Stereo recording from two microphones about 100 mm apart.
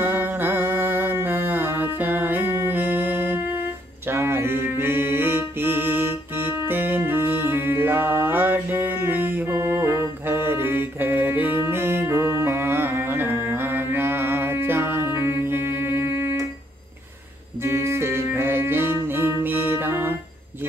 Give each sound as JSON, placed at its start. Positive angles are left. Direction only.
{"t": 0.0, "sound": "music", "side_deg": -20}
{"t": 4.1, "sound": "mantra", "side_deg": -25}
{"t": 6.7, "sound": "music", "side_deg": -20}
{"t": 17.6, "sound": "music", "side_deg": -25}